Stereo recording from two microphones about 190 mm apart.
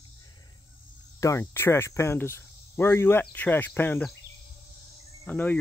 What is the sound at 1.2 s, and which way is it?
Speech, 15° left (ahead or behind).